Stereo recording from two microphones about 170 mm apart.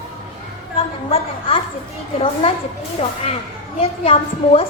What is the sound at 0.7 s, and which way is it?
Speech, 35° left (ahead or behind).